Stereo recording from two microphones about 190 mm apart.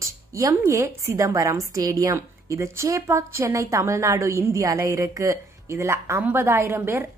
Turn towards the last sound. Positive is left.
turn(degrees=-15)  # may be behind; listen again after turning